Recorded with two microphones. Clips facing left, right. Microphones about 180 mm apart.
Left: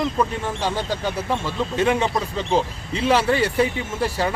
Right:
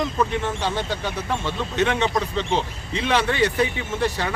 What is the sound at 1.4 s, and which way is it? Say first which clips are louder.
A man's voice: left 1 dB; 5° left (ahead or behind).